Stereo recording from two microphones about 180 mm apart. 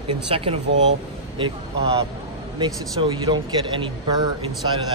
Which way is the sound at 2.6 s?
25° right (ahead or behind).